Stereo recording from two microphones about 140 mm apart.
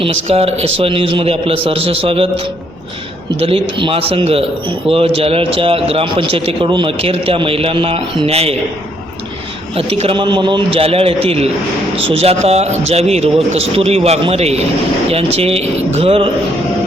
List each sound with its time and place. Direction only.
0.0 s speech: 45° right (ahead or behind)
3.4 s a man's voice: 40° right (ahead or behind)
9.7 s a man's voice: 45° right (ahead or behind)